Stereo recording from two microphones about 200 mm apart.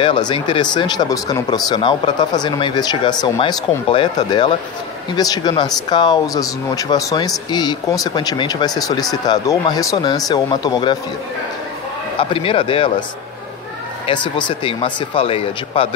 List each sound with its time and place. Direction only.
0.0 s speech: 25° left (ahead or behind)
12.2 s speech: 25° left (ahead or behind)
14.0 s speech: 25° left (ahead or behind)